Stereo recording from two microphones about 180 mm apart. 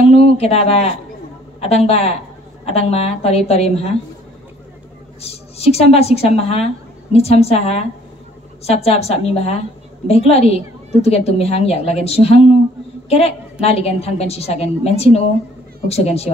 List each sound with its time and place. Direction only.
0.0 s a sound: 35° left (ahead or behind)
1.6 s a woman's voice: 35° left (ahead or behind)
5.2 s a woman's voice: 35° left (ahead or behind)